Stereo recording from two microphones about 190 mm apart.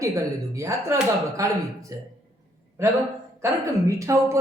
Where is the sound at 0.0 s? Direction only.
15° right (ahead or behind).